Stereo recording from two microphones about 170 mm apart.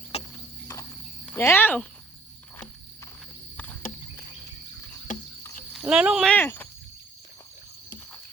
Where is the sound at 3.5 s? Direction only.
10° left (ahead or behind).